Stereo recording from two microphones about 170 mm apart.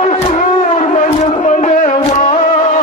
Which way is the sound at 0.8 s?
45° left (ahead or behind).